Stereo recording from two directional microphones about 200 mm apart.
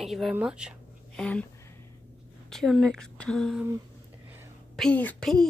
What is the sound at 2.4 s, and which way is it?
A woman's voice, centre (ahead or behind).